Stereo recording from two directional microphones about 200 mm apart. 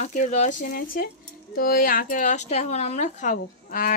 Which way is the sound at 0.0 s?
35° left (ahead or behind).